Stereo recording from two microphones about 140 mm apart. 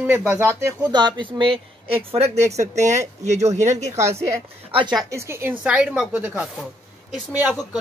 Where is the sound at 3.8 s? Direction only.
20° right (ahead or behind).